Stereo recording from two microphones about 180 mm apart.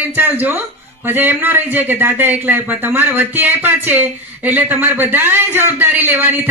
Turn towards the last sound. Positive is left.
turn(degrees=-10)  # may be behind; listen again after turning